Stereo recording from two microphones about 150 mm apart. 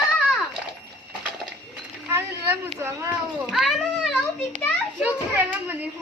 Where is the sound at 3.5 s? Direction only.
Centre (ahead or behind).